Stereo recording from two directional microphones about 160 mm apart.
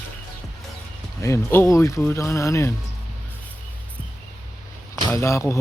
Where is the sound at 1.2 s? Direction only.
15° left (ahead or behind).